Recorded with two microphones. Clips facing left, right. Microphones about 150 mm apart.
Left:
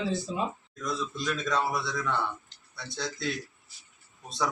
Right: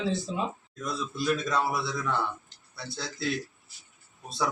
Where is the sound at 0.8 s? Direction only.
5° right (ahead or behind).